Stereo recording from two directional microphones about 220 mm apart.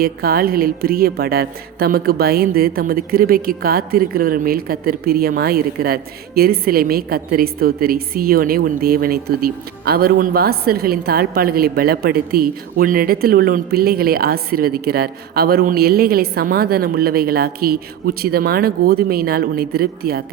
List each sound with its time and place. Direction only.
0.0 s a woman's voice: 40° right (ahead or behind)